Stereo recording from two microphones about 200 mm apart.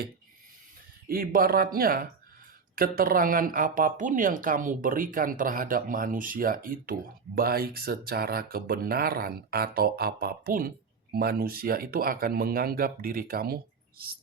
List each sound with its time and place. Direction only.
1.0 s speech: 45° right (ahead or behind)